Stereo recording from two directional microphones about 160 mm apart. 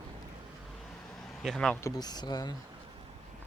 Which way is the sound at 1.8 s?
20° left (ahead or behind).